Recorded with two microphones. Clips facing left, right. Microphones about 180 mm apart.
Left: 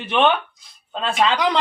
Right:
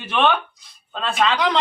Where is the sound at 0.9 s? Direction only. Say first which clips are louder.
Left 2 dB; 20° left (ahead or behind).